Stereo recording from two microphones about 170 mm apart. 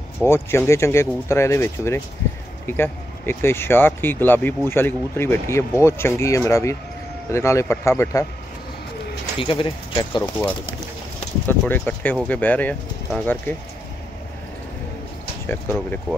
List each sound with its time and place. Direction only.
0.2 s speech: 15° left (ahead or behind)
9.4 s speech: 30° left (ahead or behind)
11.4 s speech: 10° left (ahead or behind)